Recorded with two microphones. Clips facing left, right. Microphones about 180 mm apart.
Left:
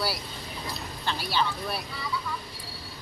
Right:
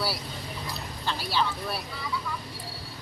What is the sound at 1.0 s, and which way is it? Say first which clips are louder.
Speech: even; centre (ahead or behind).